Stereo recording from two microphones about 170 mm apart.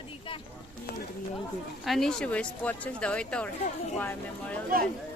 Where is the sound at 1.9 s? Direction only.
Centre (ahead or behind).